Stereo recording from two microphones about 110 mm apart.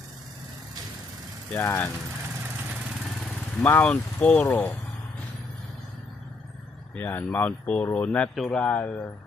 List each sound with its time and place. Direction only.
1.5 s speech: 20° left (ahead or behind)
3.6 s speech: 15° left (ahead or behind)
4.4 s speech: 20° left (ahead or behind)
6.9 s speech: 15° left (ahead or behind)